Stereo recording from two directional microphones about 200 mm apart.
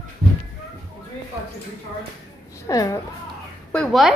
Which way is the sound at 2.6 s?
15° left (ahead or behind).